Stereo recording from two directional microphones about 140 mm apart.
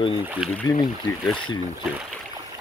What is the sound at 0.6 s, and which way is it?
Speech, 30° left (ahead or behind).